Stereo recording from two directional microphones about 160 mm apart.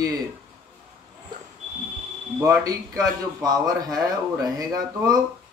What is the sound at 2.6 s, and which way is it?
A man's voice, 20° right (ahead or behind).